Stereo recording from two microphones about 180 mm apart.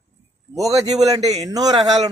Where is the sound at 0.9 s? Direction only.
20° right (ahead or behind).